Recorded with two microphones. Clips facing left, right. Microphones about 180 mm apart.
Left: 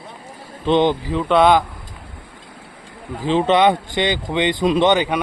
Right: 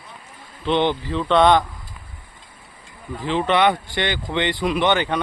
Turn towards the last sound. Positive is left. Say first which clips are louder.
# left 4 dB
turn(degrees=15)  # may be behind; listen again after turning